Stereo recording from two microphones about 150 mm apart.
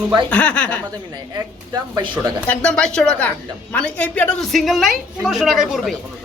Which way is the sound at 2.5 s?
5° left (ahead or behind).